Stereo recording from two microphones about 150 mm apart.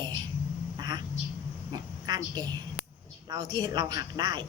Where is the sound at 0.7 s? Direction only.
25° right (ahead or behind).